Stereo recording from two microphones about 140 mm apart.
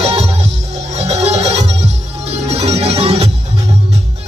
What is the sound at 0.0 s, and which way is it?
Music, 50° right (ahead or behind).